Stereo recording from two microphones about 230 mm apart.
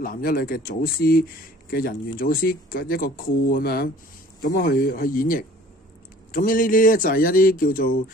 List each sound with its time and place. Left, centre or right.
0.0 s speech: left